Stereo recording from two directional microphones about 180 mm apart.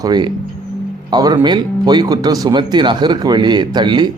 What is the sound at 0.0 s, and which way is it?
Speech, 25° right (ahead or behind).